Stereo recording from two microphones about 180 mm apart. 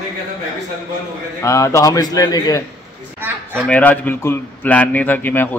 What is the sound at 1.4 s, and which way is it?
Speech, 15° left (ahead or behind).